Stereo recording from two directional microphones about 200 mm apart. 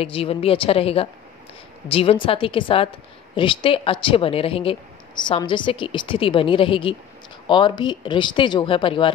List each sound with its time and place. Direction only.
0.0 s speech: 30° left (ahead or behind)